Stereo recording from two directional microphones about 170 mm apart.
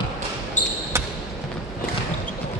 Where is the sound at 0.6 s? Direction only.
45° left (ahead or behind).